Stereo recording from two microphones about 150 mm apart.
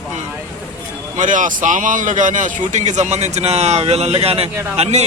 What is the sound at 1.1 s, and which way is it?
A man's voice, 60° right (ahead or behind).